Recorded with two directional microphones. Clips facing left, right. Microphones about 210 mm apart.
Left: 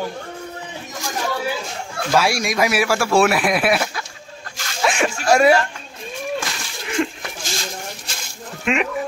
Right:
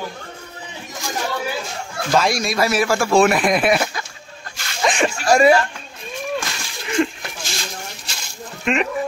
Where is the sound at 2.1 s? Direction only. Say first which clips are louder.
Even; 10° left (ahead or behind).